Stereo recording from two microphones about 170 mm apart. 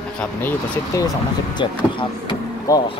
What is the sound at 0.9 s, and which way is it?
Speech, 20° left (ahead or behind).